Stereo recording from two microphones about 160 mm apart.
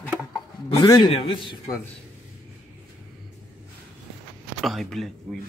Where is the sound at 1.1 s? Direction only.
35° left (ahead or behind).